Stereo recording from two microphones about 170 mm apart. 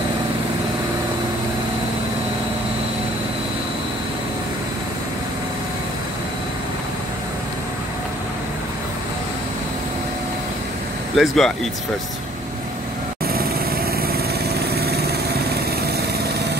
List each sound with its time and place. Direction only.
11.1 s speech: centre (ahead or behind)
14.0 s vehicle: 70° right (ahead or behind)